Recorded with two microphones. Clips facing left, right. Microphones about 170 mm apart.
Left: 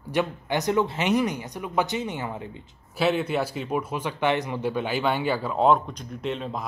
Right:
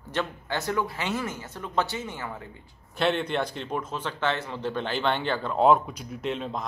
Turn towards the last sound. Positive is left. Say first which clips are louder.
# left 1 dB
turn(degrees=0)  # may be behind; listen again after turning